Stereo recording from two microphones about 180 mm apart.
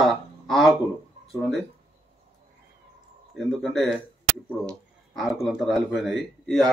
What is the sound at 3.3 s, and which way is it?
A man's voice, centre (ahead or behind).